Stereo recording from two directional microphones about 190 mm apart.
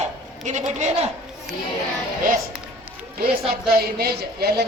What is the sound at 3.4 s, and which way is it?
Speech, 55° right (ahead or behind).